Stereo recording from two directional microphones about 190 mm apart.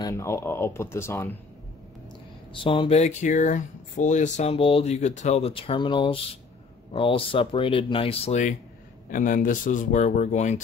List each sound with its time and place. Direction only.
0.0 s speech: 15° left (ahead or behind)
2.5 s speech: 25° left (ahead or behind)